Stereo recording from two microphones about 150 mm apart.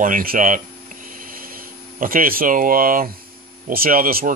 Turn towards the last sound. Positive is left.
turn(degrees=-75)  # may be behind; listen again after turning